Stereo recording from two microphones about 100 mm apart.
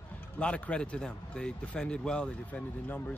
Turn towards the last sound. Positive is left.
turn(degrees=15)  # may be behind; listen again after turning